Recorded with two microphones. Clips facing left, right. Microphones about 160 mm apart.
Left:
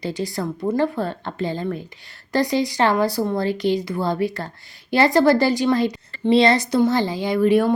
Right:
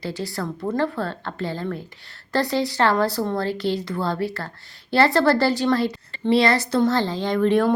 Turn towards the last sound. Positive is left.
turn(degrees=5)  # may be behind; listen again after turning